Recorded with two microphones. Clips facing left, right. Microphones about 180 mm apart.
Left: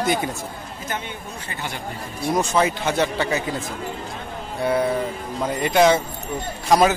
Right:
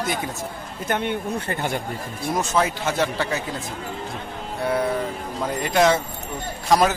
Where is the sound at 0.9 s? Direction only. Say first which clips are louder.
Right 8 dB; 60° right (ahead or behind).